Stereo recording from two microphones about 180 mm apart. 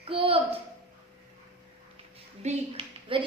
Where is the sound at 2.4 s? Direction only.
40° right (ahead or behind).